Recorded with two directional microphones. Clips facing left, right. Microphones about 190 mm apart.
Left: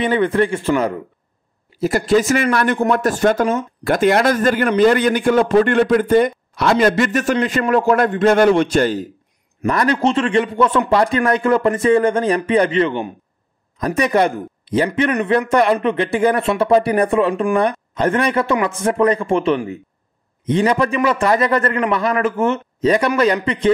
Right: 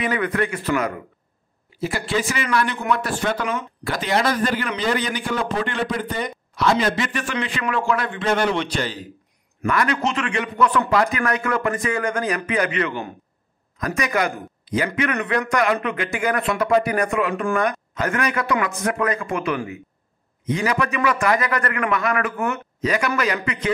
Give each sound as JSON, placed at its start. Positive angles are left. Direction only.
{"t": 0.0, "sound": "a man's voice", "side_deg": 30}
{"t": 1.8, "sound": "speech", "side_deg": 45}
{"t": 9.7, "sound": "a man's voice", "side_deg": 35}